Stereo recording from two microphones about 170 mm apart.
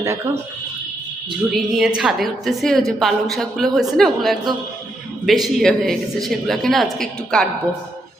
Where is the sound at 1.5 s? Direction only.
5° right (ahead or behind).